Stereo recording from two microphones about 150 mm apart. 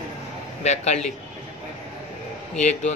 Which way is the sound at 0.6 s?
50° left (ahead or behind).